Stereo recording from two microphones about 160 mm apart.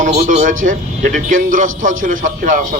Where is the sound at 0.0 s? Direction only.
50° right (ahead or behind).